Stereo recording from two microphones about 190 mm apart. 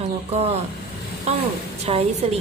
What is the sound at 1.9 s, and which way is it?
Speech, 30° right (ahead or behind).